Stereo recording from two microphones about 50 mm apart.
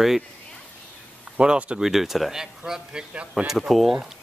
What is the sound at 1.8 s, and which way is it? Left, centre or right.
Speech, centre.